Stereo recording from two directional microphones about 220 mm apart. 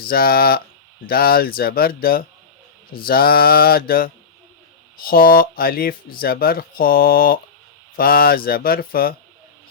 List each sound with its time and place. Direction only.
0.0 s speech: 45° left (ahead or behind)